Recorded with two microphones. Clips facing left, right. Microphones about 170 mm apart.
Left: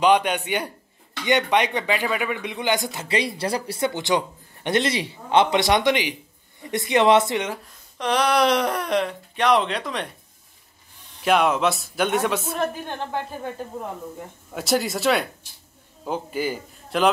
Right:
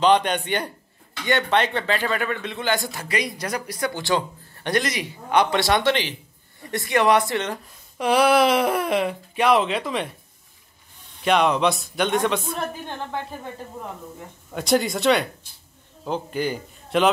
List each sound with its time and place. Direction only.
0.0 s speech: 10° left (ahead or behind)
8.0 s speech: 5° right (ahead or behind)
11.2 s speech: 5° left (ahead or behind)
14.5 s speech: 5° left (ahead or behind)